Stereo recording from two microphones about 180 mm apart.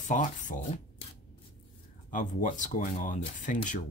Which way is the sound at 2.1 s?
45° left (ahead or behind).